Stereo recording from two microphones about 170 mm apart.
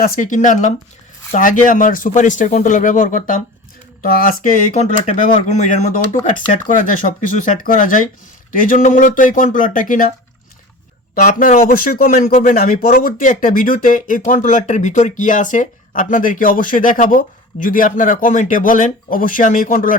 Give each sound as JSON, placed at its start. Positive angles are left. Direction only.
{"t": 0.0, "sound": "speech", "side_deg": 50}
{"t": 4.8, "sound": "speech", "side_deg": 45}
{"t": 11.1, "sound": "speech", "side_deg": 55}